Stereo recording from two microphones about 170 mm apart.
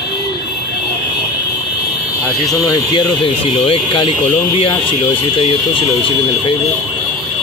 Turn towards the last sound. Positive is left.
turn(degrees=30)  # may be behind; listen again after turning